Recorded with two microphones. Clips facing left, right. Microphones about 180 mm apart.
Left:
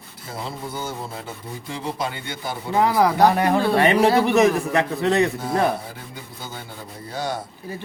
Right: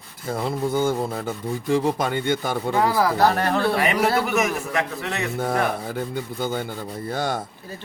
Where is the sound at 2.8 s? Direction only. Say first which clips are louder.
Left 3 dB; 20° left (ahead or behind).